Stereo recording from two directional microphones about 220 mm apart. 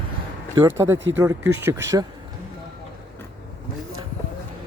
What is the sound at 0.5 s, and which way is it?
Speech, 10° right (ahead or behind).